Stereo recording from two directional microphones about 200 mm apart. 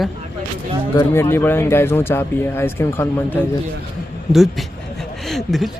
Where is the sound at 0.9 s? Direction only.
15° left (ahead or behind).